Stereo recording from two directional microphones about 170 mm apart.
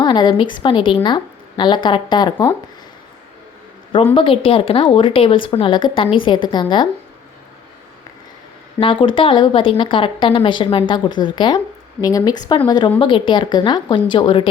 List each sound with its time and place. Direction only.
0.0 s speech: 25° left (ahead or behind)
3.9 s speech: 30° left (ahead or behind)
8.8 s speech: 30° left (ahead or behind)